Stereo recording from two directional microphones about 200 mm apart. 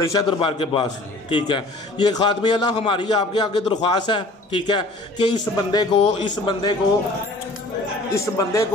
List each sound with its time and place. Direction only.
0.0 s a man's voice: 20° left (ahead or behind)
8.1 s a man's voice: 15° left (ahead or behind)